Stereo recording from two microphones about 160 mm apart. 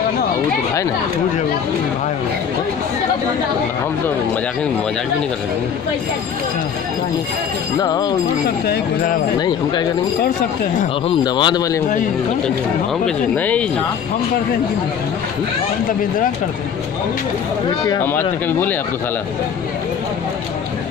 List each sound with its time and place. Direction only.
7.8 s speech: 25° left (ahead or behind)
9.4 s speech: 30° left (ahead or behind)
11.2 s speech: 25° left (ahead or behind)
13.0 s speech: 10° left (ahead or behind)
18.0 s speech: 15° left (ahead or behind)